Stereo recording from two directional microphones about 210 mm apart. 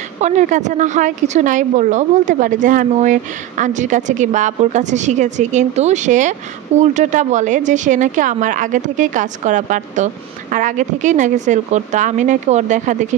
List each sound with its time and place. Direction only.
0.2 s a woman's voice: 35° right (ahead or behind)